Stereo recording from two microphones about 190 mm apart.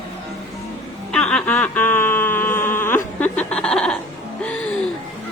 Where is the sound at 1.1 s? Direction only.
5° left (ahead or behind).